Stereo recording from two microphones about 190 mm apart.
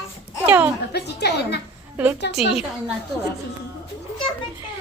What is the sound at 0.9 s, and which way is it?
Speech, 60° left (ahead or behind).